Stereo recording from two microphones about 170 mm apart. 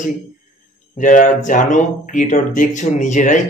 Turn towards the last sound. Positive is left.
turn(degrees=45)  # may be behind; listen again after turning